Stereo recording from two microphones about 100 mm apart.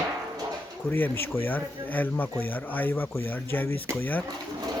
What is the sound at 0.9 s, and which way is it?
Speech, 20° left (ahead or behind).